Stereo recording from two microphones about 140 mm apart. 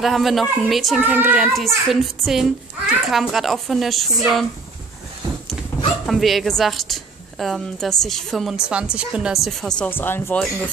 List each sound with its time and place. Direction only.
0.0 s a child's voice: centre (ahead or behind)
6.0 s a woman's voice: centre (ahead or behind)
9.8 s speech: 15° left (ahead or behind)